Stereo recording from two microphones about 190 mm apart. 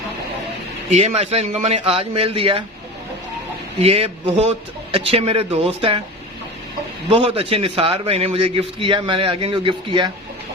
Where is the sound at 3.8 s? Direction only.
30° right (ahead or behind).